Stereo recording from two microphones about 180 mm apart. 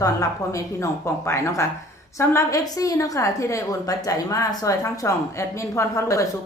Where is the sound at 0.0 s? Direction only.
15° left (ahead or behind).